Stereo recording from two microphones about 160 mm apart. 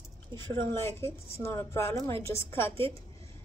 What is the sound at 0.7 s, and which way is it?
A woman's voice, 15° left (ahead or behind).